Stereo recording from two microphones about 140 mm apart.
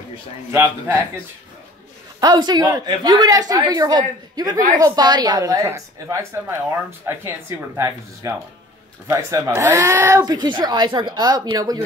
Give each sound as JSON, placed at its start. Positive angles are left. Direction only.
{"t": 0.5, "sound": "a woman's voice", "side_deg": -20}
{"t": 2.1, "sound": "a woman's voice", "side_deg": -30}